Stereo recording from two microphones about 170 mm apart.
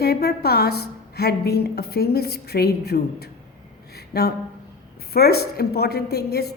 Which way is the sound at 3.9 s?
70° left (ahead or behind).